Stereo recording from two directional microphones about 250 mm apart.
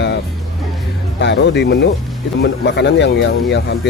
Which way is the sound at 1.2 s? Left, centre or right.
Left.